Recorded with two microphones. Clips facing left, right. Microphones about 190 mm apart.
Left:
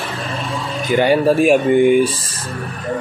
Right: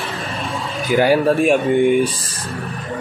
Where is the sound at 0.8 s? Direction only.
5° right (ahead or behind).